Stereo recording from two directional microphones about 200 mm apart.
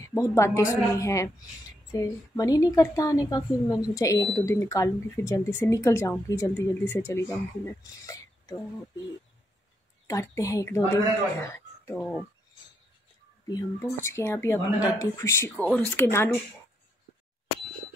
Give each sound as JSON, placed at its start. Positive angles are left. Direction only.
{"t": 0.1, "sound": "speech", "side_deg": 15}
{"t": 10.0, "sound": "speech", "side_deg": 15}
{"t": 12.0, "sound": "speech", "side_deg": -5}
{"t": 13.5, "sound": "speech", "side_deg": 15}